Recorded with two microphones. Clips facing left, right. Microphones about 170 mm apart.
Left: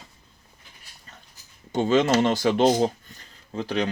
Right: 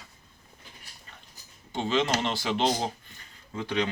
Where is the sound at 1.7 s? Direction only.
45° left (ahead or behind).